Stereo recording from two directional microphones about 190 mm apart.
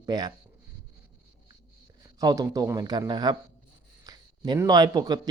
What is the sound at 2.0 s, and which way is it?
A man's voice, 20° right (ahead or behind).